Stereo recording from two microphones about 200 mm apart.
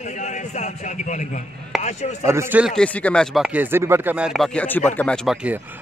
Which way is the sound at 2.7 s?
5° left (ahead or behind).